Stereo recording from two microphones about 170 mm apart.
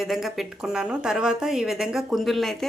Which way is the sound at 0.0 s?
Centre (ahead or behind).